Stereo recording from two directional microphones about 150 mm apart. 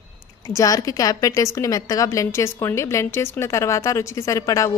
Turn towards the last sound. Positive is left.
turn(degrees=20)  # may be behind; listen again after turning